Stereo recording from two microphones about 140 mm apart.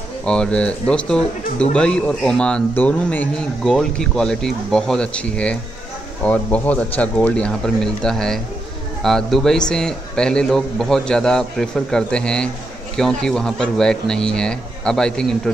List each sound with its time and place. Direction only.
0.2 s a man's voice: 5° left (ahead or behind)